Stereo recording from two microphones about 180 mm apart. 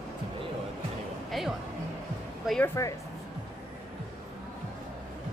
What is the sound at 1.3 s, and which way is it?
Speech, centre (ahead or behind).